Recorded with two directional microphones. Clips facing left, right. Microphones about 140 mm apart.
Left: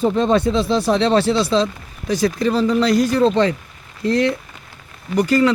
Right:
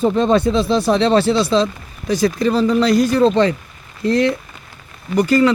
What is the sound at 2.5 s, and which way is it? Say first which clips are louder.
Speech: right 1 dB; 50° right (ahead or behind).